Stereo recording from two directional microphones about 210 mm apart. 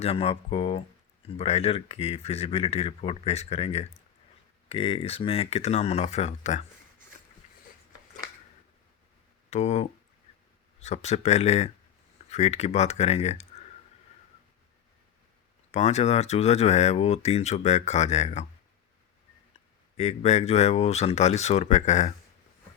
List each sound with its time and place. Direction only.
0.0 s speech: 30° left (ahead or behind)
9.5 s speech: 30° left (ahead or behind)
15.7 s speech: 30° left (ahead or behind)
20.0 s speech: 30° left (ahead or behind)